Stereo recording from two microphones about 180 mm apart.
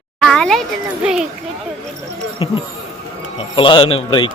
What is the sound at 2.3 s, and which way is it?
A man's voice, 30° left (ahead or behind).